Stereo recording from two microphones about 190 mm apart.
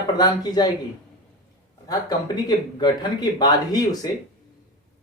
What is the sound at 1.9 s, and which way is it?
Speech, 20° left (ahead or behind).